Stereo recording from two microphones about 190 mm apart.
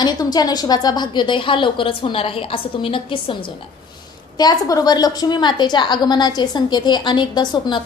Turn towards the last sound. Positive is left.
turn(degrees=25)  # may be behind; listen again after turning